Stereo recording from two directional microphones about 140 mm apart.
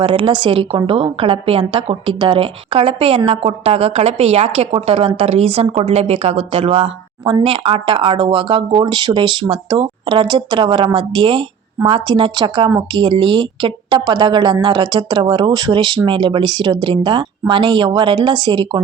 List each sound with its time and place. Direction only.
0.0 s a woman's voice: 35° right (ahead or behind)